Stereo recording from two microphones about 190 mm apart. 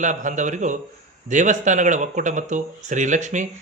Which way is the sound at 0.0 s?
40° right (ahead or behind).